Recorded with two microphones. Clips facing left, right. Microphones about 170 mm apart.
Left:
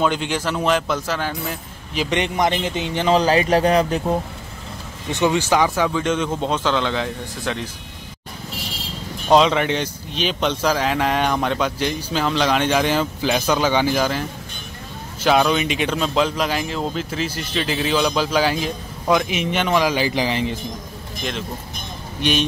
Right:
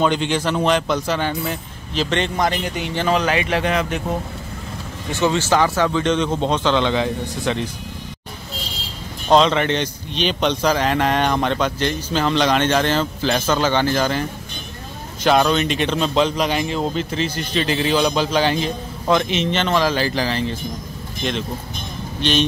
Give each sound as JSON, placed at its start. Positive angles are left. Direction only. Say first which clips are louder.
{"t": 0.0, "sound": "a man's voice", "louder": "right 2 dB", "side_deg": 5}
{"t": 2.0, "sound": "a man's voice", "louder": "left 1 dB", "side_deg": 15}
{"t": 3.2, "sound": "speech", "louder": "left 3 dB", "side_deg": 35}
{"t": 5.1, "sound": "speech", "louder": "even", "side_deg": 15}
{"t": 9.3, "sound": "speech", "louder": "even", "side_deg": 5}
{"t": 15.2, "sound": "a man's voice", "louder": "right 1 dB", "side_deg": 5}
{"t": 21.2, "sound": "speech", "louder": "right 4 dB", "side_deg": 5}